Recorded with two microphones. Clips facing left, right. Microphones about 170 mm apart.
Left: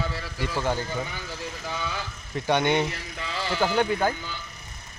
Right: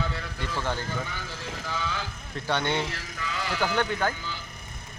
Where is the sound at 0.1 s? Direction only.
5° left (ahead or behind).